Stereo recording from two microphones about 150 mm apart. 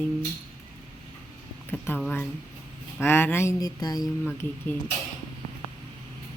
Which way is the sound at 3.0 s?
15° left (ahead or behind).